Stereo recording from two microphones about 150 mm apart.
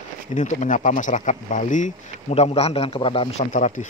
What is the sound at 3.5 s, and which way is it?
Speech, 60° left (ahead or behind).